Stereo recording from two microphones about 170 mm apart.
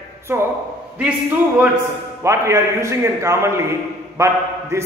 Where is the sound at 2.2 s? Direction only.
15° right (ahead or behind).